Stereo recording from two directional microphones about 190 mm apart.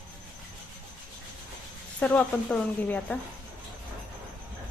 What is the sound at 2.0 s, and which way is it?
A woman's voice, 5° left (ahead or behind).